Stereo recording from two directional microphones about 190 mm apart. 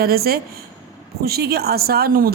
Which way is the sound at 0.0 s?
55° right (ahead or behind).